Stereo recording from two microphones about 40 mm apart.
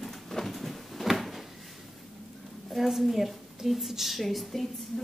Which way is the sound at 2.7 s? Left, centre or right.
Centre.